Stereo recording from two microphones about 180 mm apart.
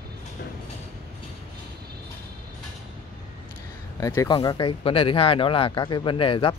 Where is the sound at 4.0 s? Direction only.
20° left (ahead or behind).